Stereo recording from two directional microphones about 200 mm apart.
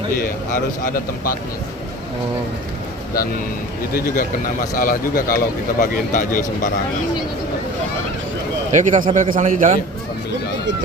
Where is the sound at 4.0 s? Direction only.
45° left (ahead or behind).